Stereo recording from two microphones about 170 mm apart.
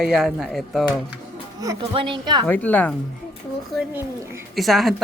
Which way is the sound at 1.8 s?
30° right (ahead or behind).